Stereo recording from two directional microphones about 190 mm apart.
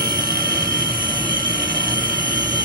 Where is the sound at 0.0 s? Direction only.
50° right (ahead or behind).